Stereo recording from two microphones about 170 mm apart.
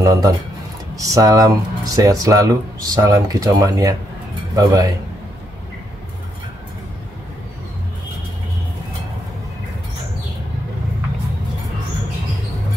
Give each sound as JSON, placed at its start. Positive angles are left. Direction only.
{"t": 0.0, "sound": "speech", "side_deg": -20}